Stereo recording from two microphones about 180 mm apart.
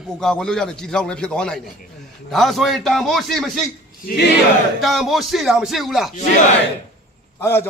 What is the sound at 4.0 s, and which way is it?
Speech, 55° left (ahead or behind).